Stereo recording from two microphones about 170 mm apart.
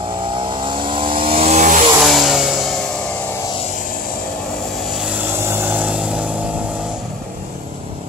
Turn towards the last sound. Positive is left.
turn(degrees=-5)  # may be behind; listen again after turning